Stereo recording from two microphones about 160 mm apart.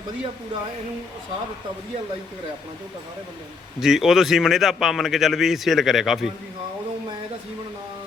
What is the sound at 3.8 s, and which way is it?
Speech, 5° right (ahead or behind).